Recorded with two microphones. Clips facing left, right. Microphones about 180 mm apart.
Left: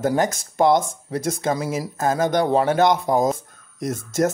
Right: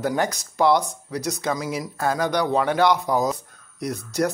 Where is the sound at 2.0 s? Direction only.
45° left (ahead or behind).